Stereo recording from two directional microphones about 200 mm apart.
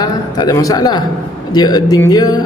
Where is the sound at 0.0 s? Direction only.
20° left (ahead or behind).